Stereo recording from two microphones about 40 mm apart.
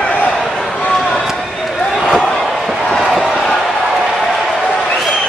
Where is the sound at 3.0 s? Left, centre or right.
Centre.